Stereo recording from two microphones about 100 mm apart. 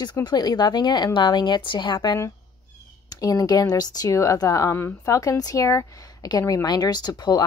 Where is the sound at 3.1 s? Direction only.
35° left (ahead or behind).